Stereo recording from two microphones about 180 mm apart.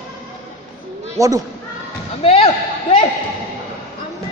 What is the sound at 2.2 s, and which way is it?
Speech, 35° left (ahead or behind).